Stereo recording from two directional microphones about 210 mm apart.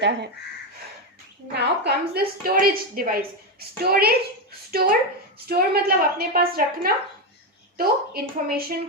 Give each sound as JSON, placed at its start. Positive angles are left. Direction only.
{"t": 0.0, "sound": "speech", "side_deg": -55}
{"t": 1.5, "sound": "a woman's voice", "side_deg": -50}